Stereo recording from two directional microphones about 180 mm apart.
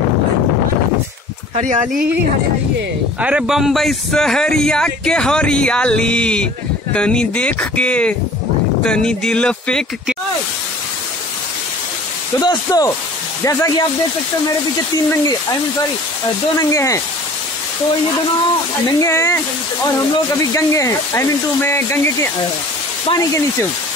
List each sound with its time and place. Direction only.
3.2 s a man's voice: 5° right (ahead or behind)
12.4 s speech: 20° left (ahead or behind)
15.0 s speech: 20° left (ahead or behind)
18.9 s speech: 15° left (ahead or behind)